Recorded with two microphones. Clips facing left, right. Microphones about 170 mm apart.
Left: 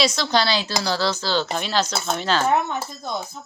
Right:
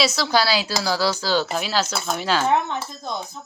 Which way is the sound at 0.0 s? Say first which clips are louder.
Even; 5° right (ahead or behind).